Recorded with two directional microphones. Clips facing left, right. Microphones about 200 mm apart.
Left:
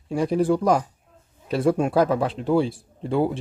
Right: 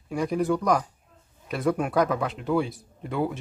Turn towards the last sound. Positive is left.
turn(degrees=30)  # may be behind; listen again after turning